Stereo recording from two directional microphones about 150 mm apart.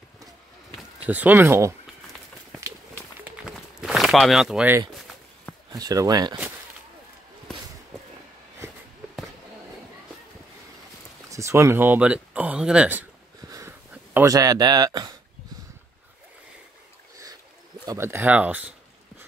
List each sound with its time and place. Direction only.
1.0 s speech: 10° right (ahead or behind)
3.2 s walk: 10° right (ahead or behind)
5.7 s speech: 25° right (ahead or behind)
11.2 s speech: 20° right (ahead or behind)
13.5 s a sound: 20° right (ahead or behind)
17.8 s speech: 15° right (ahead or behind)